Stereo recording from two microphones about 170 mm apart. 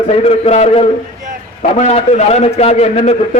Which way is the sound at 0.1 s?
35° left (ahead or behind).